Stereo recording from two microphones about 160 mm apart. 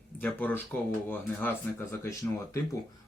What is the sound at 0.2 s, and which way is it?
Speech, 10° left (ahead or behind).